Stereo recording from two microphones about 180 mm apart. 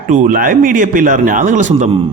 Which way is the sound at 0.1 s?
50° right (ahead or behind).